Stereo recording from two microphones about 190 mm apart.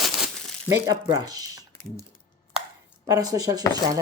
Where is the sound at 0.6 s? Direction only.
20° right (ahead or behind).